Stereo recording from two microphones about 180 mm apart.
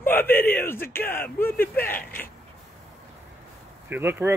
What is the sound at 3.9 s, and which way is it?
Speech, 10° right (ahead or behind).